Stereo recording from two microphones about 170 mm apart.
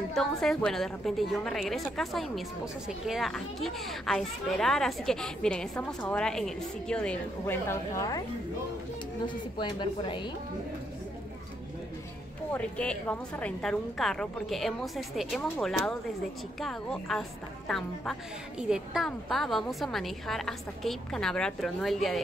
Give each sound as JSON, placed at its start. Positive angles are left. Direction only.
{"t": 0.1, "sound": "a woman's voice", "side_deg": 0}
{"t": 9.2, "sound": "speech", "side_deg": 30}
{"t": 12.5, "sound": "a woman's voice", "side_deg": 5}